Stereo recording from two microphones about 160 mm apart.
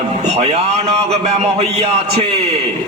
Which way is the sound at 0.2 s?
40° right (ahead or behind).